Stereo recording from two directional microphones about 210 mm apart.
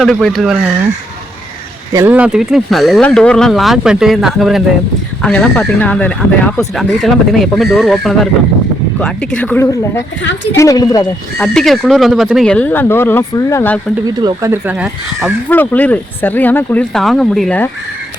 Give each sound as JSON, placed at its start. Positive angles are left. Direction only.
{"t": 0.0, "sound": "speech", "side_deg": 0}
{"t": 1.9, "sound": "speech", "side_deg": -10}
{"t": 11.4, "sound": "speech", "side_deg": 0}
{"t": 14.2, "sound": "speech", "side_deg": -15}
{"t": 15.4, "sound": "speech", "side_deg": 10}